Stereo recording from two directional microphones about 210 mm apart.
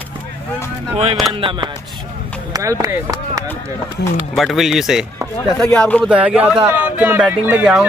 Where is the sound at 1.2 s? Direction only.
25° right (ahead or behind).